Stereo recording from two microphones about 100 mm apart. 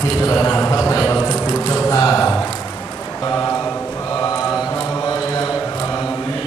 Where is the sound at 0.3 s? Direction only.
30° left (ahead or behind).